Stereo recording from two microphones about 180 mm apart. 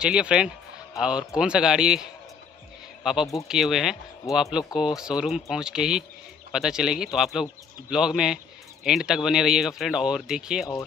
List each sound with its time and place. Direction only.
0.0 s a man's voice: 5° right (ahead or behind)